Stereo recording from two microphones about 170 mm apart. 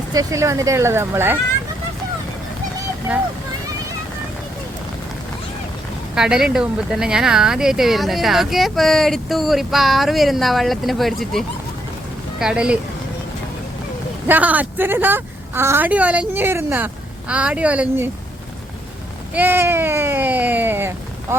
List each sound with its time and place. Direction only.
0.1 s a woman's voice: 20° right (ahead or behind)
6.1 s speech: 5° right (ahead or behind)
14.3 s a woman's voice: 10° right (ahead or behind)
19.3 s speech: 10° right (ahead or behind)